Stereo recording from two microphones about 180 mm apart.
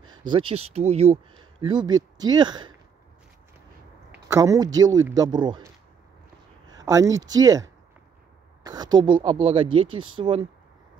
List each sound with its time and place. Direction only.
0.0 s speech: 25° right (ahead or behind)
4.1 s a sound: 15° right (ahead or behind)
4.7 s speech: 20° right (ahead or behind)
6.7 s speech: 20° right (ahead or behind)